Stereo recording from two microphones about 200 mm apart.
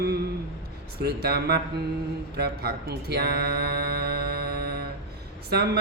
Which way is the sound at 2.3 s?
50° right (ahead or behind).